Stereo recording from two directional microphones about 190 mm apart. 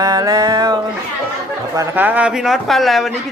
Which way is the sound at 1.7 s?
15° right (ahead or behind).